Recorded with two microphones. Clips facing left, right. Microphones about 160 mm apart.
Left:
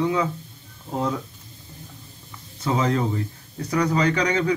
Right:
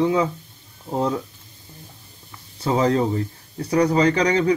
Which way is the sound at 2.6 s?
35° right (ahead or behind).